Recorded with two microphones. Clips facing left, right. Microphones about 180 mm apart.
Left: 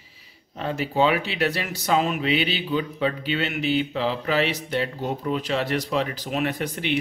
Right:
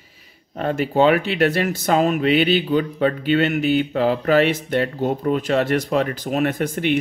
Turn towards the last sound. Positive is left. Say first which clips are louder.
# right 5 dB
turn(degrees=-45)  # may be behind; listen again after turning